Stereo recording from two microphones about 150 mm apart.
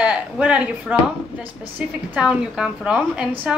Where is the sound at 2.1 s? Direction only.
5° right (ahead or behind).